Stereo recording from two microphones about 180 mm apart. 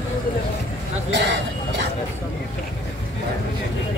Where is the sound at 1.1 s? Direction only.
70° right (ahead or behind).